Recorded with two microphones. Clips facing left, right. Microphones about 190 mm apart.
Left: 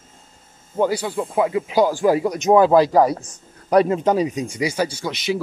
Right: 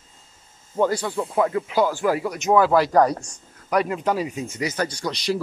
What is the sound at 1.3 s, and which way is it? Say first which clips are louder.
Speech: left 3 dB; 15° left (ahead or behind).